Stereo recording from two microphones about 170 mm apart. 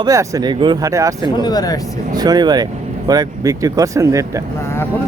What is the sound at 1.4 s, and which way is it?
Speech, 25° left (ahead or behind).